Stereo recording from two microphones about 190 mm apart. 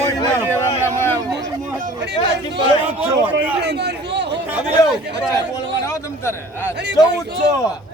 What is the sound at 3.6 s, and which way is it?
Speech, 60° right (ahead or behind).